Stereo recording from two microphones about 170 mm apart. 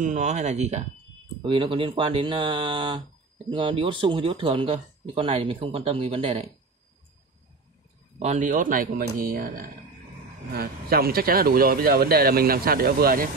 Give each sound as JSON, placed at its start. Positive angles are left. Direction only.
{"t": 0.0, "sound": "speech", "side_deg": -45}
{"t": 1.4, "sound": "speech", "side_deg": -30}
{"t": 8.2, "sound": "speech", "side_deg": -45}